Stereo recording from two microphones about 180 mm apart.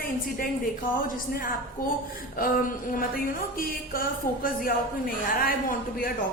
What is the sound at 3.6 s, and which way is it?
A woman's voice, 50° left (ahead or behind).